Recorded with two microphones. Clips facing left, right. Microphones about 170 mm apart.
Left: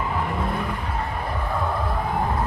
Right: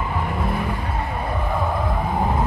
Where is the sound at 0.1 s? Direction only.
Centre (ahead or behind).